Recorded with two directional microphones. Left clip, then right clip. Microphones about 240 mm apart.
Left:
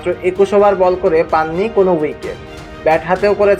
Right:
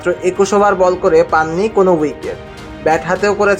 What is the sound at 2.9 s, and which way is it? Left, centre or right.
Speech, right.